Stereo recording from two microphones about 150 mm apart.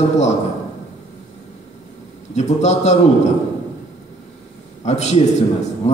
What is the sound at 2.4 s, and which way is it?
Speech, 50° left (ahead or behind).